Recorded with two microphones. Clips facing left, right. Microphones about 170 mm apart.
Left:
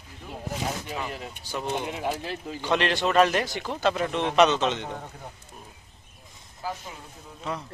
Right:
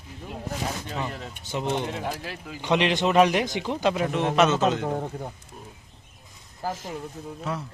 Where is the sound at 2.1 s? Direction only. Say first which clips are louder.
Left 3 dB; 25° left (ahead or behind).